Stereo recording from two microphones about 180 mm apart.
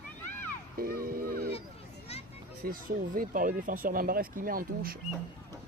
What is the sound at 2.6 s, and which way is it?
Speech, 50° right (ahead or behind).